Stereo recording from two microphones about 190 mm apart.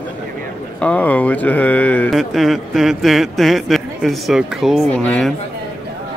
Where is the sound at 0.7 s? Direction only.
5° left (ahead or behind).